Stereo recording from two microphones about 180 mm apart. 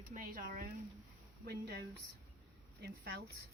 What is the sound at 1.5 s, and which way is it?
Speech, 65° right (ahead or behind).